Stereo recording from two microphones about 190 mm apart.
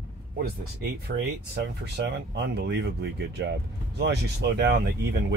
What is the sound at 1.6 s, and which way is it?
Speech, 65° right (ahead or behind).